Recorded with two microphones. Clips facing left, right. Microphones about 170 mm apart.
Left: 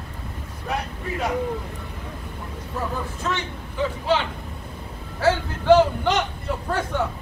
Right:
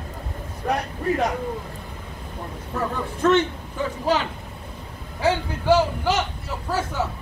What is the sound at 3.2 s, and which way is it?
Speech, 55° right (ahead or behind).